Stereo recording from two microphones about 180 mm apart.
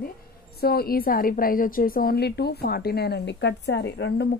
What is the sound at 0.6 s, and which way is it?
A woman's voice, 60° left (ahead or behind).